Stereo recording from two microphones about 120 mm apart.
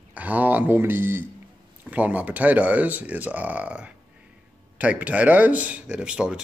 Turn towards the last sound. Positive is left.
turn(degrees=-10)  # may be behind; listen again after turning